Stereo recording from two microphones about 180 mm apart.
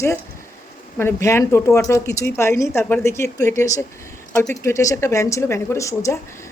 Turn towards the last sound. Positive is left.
turn(degrees=15)  # may be behind; listen again after turning